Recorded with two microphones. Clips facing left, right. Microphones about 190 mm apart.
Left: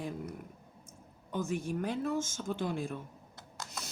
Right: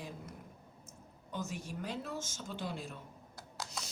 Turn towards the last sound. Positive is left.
turn(degrees=0)  # may be behind; listen again after turning